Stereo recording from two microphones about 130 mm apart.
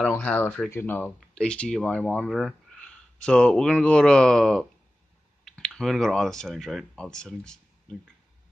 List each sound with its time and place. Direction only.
0.1 s speech: 15° left (ahead or behind)